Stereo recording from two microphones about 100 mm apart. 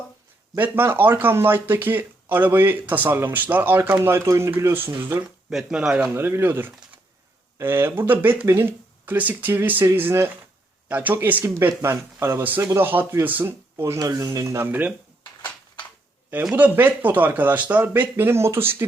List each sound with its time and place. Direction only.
0.5 s speech: 20° right (ahead or behind)
5.5 s speech: 5° right (ahead or behind)
6.1 s speech: 25° right (ahead or behind)
15.2 s a sound: 45° left (ahead or behind)
16.6 s speech: 20° right (ahead or behind)